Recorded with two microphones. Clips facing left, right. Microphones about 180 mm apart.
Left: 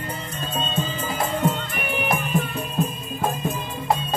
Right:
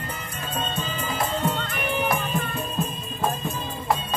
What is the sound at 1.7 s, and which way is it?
Music, 15° left (ahead or behind).